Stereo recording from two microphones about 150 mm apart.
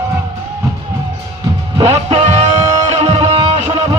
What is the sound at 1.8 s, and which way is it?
Music, 45° right (ahead or behind).